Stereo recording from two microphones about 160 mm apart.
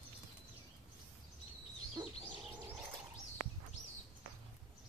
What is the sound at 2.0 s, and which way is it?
Bird, 30° right (ahead or behind).